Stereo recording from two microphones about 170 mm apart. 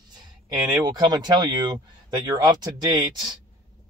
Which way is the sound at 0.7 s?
25° right (ahead or behind).